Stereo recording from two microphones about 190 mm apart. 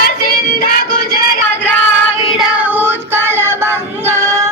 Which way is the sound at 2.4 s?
10° right (ahead or behind).